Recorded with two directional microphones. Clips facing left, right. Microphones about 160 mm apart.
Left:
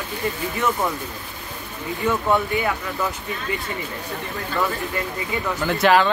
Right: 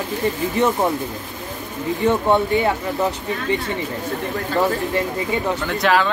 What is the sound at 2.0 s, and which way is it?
Speech, 25° right (ahead or behind).